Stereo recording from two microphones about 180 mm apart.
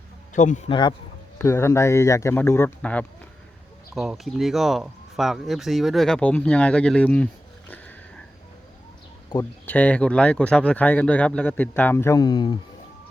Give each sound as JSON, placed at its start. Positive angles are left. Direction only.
{"t": 0.3, "sound": "a man's voice", "side_deg": 40}
{"t": 0.7, "sound": "speech", "side_deg": 25}
{"t": 1.4, "sound": "speech", "side_deg": 15}
{"t": 9.3, "sound": "speech", "side_deg": 15}